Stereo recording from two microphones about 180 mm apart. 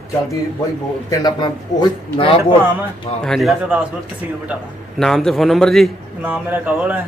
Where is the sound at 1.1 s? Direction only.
25° left (ahead or behind).